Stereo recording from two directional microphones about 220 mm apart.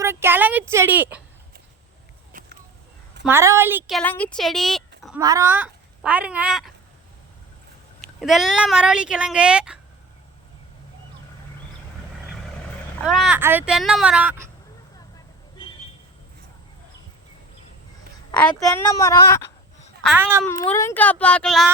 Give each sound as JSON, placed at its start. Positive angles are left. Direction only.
{"t": 0.0, "sound": "speech", "side_deg": -10}
{"t": 2.3, "sound": "a sound", "side_deg": -40}
{"t": 3.2, "sound": "speech", "side_deg": -10}
{"t": 5.2, "sound": "speech", "side_deg": -15}
{"t": 8.2, "sound": "speech", "side_deg": 0}
{"t": 13.1, "sound": "speech", "side_deg": 0}
{"t": 18.3, "sound": "a sound", "side_deg": 5}
{"t": 18.6, "sound": "speech", "side_deg": 15}
{"t": 20.1, "sound": "a child's voice", "side_deg": -10}
{"t": 20.7, "sound": "speech", "side_deg": 10}